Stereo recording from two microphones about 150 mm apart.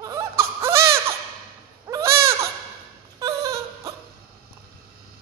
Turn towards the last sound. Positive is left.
turn(degrees=-25)  # may be behind; listen again after turning